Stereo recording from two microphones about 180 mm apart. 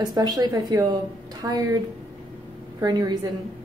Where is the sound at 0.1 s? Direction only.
20° right (ahead or behind).